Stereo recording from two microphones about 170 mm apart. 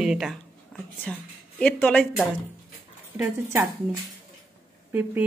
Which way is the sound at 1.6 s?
5° left (ahead or behind).